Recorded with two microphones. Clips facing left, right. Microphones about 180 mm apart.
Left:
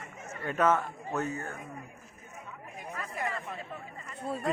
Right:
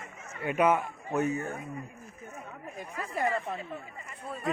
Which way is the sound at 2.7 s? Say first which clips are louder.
Right 4 dB; 35° right (ahead or behind).